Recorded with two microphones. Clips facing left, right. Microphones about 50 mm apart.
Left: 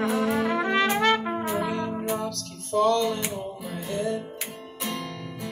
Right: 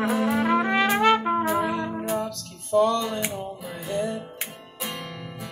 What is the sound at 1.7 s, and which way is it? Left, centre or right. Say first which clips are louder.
Music: right 1 dB; centre.